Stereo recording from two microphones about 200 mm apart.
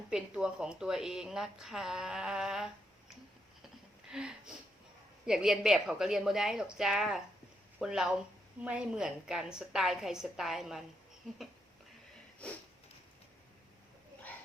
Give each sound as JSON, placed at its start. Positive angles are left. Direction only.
{"t": 0.1, "sound": "speech", "side_deg": -5}
{"t": 4.1, "sound": "speech", "side_deg": -5}